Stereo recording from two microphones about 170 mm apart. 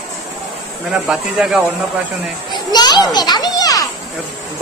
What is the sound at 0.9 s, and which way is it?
Speech, 5° right (ahead or behind).